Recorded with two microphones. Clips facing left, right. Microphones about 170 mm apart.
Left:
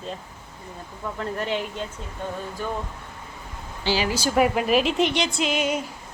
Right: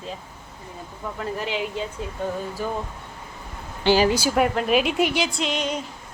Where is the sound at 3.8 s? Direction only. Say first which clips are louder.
Right 6 dB; 45° right (ahead or behind).